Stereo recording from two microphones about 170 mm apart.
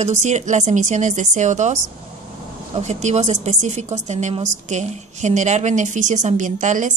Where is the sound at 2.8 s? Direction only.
45° right (ahead or behind).